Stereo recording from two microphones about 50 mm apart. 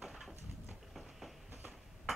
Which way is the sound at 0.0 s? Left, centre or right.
Centre.